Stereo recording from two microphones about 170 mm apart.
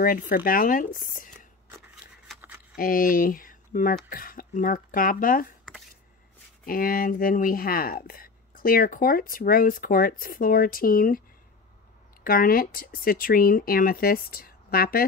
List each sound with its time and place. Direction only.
0.0 s speech: 55° left (ahead or behind)
2.2 s a sound: 5° right (ahead or behind)
2.7 s speech: 55° left (ahead or behind)
6.6 s speech: 55° left (ahead or behind)